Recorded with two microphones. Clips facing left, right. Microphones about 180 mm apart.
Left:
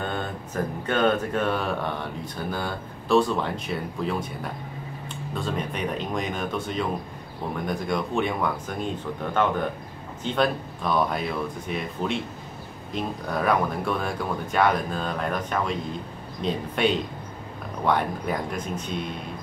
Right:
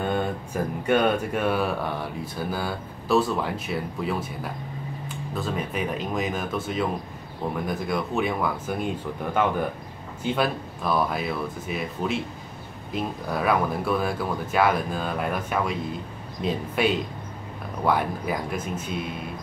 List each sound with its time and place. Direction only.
0.1 s speech: 10° right (ahead or behind)
5.3 s speech: 5° right (ahead or behind)